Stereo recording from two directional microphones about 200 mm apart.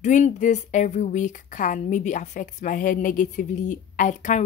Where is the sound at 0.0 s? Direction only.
35° left (ahead or behind).